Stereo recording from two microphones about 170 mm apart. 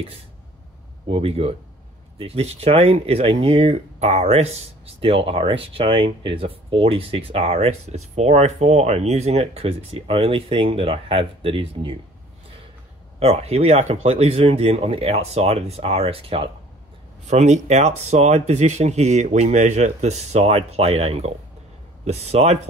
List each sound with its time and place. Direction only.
1.0 s speech: 35° right (ahead or behind)
13.2 s speech: 35° right (ahead or behind)